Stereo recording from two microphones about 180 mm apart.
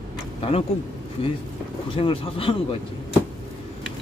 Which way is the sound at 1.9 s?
30° left (ahead or behind).